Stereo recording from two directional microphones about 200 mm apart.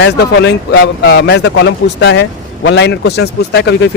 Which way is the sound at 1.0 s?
60° left (ahead or behind).